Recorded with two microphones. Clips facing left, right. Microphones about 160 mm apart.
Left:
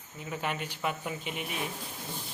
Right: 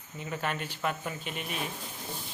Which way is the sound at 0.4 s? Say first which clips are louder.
Even; 15° left (ahead or behind).